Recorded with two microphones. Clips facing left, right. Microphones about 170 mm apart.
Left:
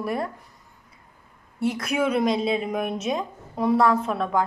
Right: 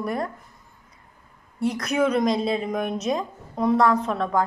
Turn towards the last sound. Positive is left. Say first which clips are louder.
# right 1 dB
turn(degrees=5)  # may be behind; listen again after turning